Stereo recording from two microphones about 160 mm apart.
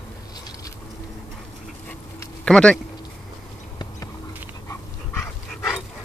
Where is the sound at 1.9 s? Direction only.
5° left (ahead or behind).